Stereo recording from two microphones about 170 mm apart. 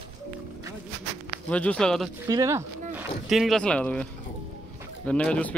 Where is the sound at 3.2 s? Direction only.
Centre (ahead or behind).